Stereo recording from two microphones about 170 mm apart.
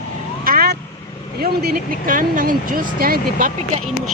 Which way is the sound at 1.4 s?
60° right (ahead or behind).